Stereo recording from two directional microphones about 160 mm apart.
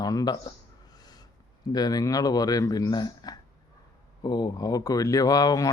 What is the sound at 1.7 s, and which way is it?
A man's voice, 25° left (ahead or behind).